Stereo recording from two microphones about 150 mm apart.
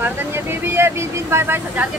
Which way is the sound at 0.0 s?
15° right (ahead or behind).